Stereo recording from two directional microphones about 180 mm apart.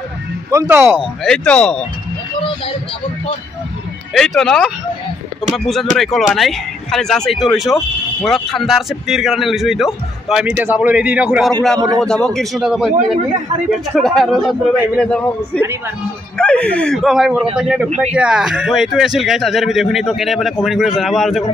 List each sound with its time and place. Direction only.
0.5 s speech: 15° right (ahead or behind)
1.2 s speech: 5° left (ahead or behind)
4.1 s speech: 5° left (ahead or behind)
12.0 s speech: 5° left (ahead or behind)
12.9 s a man's voice: 40° right (ahead or behind)
13.7 s speech: centre (ahead or behind)